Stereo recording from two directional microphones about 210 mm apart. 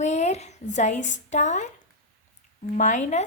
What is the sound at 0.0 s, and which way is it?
A woman's voice, 30° left (ahead or behind).